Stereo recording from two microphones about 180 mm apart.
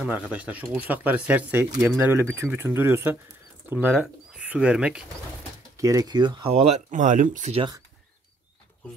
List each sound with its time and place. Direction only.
0.3 s speech: 5° right (ahead or behind)
5.8 s speech: 15° right (ahead or behind)
6.5 s speech: 40° right (ahead or behind)